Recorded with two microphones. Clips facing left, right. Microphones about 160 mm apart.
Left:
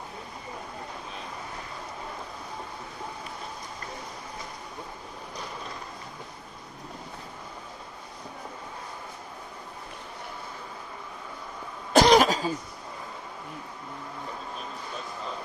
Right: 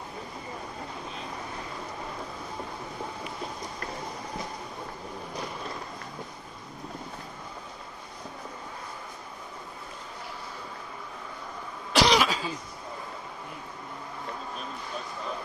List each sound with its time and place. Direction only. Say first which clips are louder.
11.9 s cough: left 5 dB; 50° left (ahead or behind)